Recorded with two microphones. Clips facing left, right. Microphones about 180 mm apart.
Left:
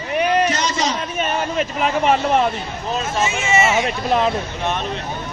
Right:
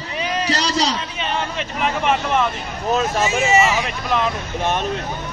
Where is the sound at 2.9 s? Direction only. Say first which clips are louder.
Right 3 dB; 35° right (ahead or behind).